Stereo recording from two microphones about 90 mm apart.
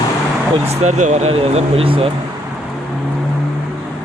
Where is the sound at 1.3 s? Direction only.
90° right.